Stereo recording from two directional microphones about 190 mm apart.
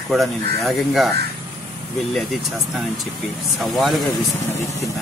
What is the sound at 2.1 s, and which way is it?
Speech, centre (ahead or behind).